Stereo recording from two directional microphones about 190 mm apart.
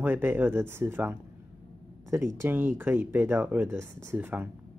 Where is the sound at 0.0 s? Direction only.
10° right (ahead or behind).